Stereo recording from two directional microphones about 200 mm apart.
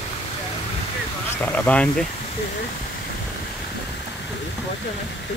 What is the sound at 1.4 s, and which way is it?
Speech, 10° left (ahead or behind).